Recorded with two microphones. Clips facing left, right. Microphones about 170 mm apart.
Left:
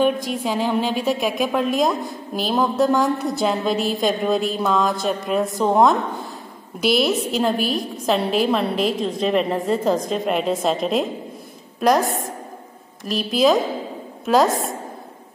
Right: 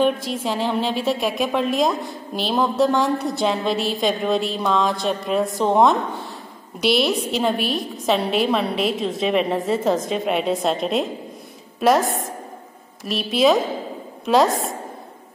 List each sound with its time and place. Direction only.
0.3 s a woman's voice: centre (ahead or behind)